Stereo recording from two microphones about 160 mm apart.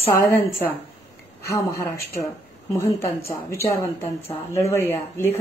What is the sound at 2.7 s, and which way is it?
Speech, 15° left (ahead or behind).